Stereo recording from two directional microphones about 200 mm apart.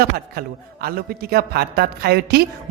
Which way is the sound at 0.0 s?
50° right (ahead or behind).